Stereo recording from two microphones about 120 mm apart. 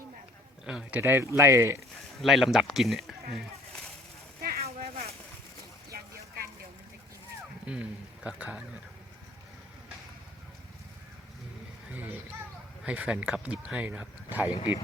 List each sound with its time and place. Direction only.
0.6 s speech: 5° right (ahead or behind); by 1.8 s 25° right (ahead or behind)
2.1 s speech: centre (ahead or behind)
4.6 s a sound: 60° right (ahead or behind)
7.7 s speech: 10° right (ahead or behind)
12.8 s speech: 10° right (ahead or behind)
14.5 s speech: 50° left (ahead or behind)